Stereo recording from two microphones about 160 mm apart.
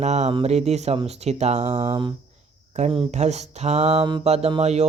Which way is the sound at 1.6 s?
25° right (ahead or behind).